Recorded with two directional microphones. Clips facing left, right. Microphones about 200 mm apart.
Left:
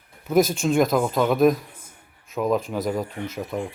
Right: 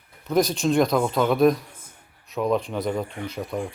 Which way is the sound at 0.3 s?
5° left (ahead or behind).